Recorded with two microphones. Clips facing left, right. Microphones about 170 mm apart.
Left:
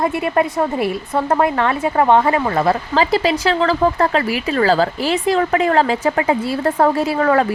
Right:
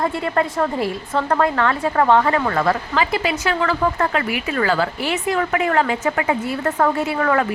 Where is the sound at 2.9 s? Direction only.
35° left (ahead or behind).